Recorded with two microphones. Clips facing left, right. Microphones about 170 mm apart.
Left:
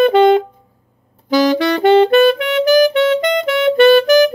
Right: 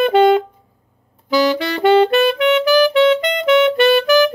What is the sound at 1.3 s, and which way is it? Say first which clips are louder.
Saxophone: left 3 dB; 40° left (ahead or behind).